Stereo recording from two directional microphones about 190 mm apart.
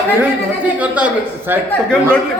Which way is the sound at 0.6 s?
5° right (ahead or behind).